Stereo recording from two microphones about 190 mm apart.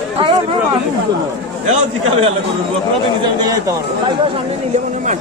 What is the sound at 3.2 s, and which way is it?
Speech, 20° right (ahead or behind).